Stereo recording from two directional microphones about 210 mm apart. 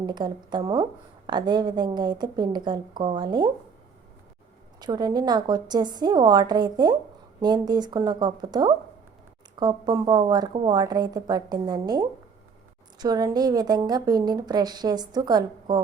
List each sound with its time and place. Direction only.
0.0 s a woman's voice: 20° right (ahead or behind)
4.8 s a woman's voice: 20° right (ahead or behind)